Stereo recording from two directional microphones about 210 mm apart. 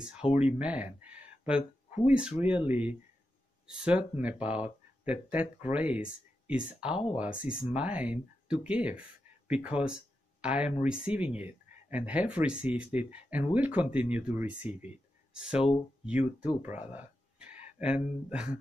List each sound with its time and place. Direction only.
0.2 s speech: 25° left (ahead or behind)
0.6 s speech: 5° right (ahead or behind)
2.0 s speech: 5° right (ahead or behind)